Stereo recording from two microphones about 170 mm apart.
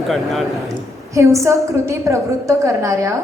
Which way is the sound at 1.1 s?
15° right (ahead or behind).